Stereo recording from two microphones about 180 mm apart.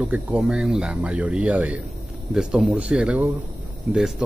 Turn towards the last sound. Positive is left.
turn(degrees=-5)  # may be behind; listen again after turning